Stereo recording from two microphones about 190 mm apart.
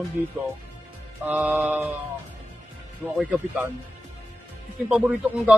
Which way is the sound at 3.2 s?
5° right (ahead or behind).